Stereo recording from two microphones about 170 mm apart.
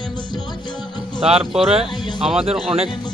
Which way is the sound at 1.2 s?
35° right (ahead or behind).